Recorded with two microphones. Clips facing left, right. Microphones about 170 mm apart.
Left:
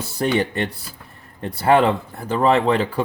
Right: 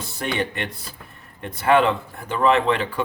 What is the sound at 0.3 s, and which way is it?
Speech, 35° left (ahead or behind).